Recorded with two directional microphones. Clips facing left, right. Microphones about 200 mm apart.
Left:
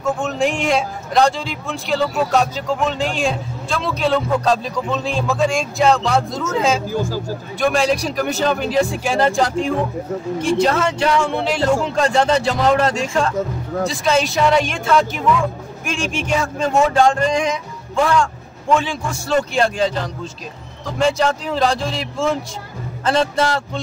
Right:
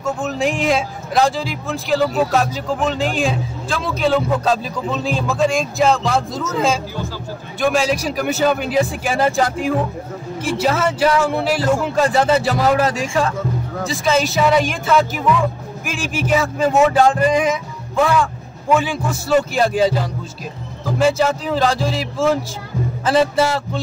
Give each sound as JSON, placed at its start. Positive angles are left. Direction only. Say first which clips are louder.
{"t": 0.0, "sound": "a man's voice", "louder": "left 1 dB", "side_deg": 0}
{"t": 6.9, "sound": "speech", "louder": "left 6 dB", "side_deg": 45}
{"t": 7.6, "sound": "a man's voice", "louder": "even", "side_deg": 0}